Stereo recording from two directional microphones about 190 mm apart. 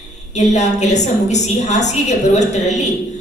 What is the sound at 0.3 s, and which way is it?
A woman's voice, 40° left (ahead or behind).